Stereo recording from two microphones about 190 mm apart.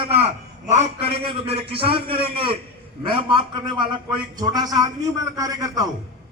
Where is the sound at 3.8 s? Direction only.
20° right (ahead or behind).